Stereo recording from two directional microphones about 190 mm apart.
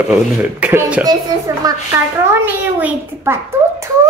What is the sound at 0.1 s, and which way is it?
Speech, 5° right (ahead or behind).